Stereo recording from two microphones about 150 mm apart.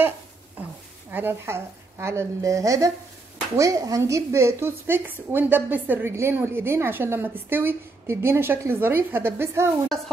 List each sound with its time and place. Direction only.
1.1 s a woman's voice: 15° right (ahead or behind)